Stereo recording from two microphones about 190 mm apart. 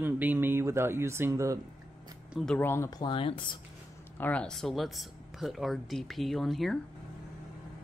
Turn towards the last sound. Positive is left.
turn(degrees=0)  # may be behind; listen again after turning